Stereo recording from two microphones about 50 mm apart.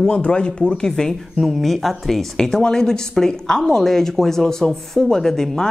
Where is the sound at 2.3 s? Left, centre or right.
Centre.